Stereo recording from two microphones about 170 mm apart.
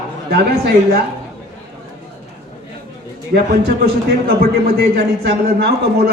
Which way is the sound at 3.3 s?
65° right (ahead or behind).